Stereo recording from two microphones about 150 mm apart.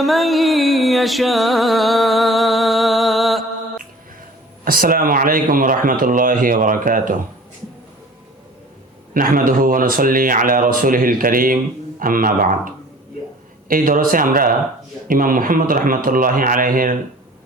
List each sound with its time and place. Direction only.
0.0 s music: centre (ahead or behind)
4.6 s speech: 70° right (ahead or behind)
9.1 s speech: 70° right (ahead or behind)